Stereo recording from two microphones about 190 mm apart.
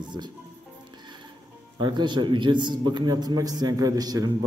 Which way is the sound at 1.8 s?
25° right (ahead or behind).